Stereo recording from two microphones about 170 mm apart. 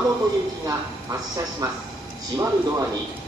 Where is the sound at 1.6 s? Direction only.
20° right (ahead or behind).